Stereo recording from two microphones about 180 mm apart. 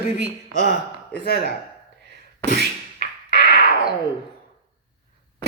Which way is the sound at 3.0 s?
60° left (ahead or behind).